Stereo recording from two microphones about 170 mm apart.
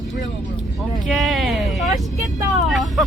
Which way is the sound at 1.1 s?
Centre (ahead or behind).